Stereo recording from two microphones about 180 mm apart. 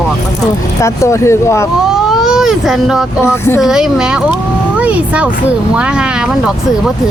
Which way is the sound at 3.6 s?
5° right (ahead or behind).